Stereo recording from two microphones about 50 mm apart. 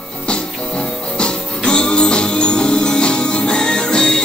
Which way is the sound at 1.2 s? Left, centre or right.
Centre.